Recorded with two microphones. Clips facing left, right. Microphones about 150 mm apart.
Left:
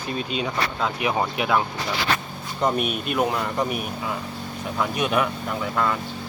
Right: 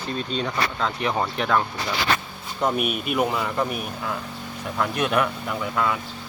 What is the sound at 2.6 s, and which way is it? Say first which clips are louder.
Speech: even; 5° right (ahead or behind).